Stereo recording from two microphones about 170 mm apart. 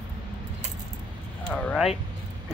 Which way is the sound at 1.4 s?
5° left (ahead or behind).